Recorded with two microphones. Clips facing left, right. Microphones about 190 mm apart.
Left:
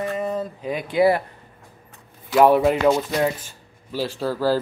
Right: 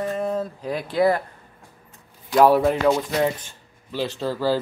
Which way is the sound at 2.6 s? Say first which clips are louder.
Left 1 dB; 10° left (ahead or behind).